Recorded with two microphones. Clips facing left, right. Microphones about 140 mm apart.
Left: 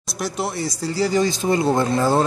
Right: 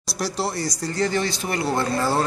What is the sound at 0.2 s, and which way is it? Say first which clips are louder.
Speech: left 1 dB; centre (ahead or behind).